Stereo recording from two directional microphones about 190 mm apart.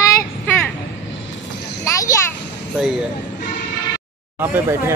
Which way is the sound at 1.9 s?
15° left (ahead or behind).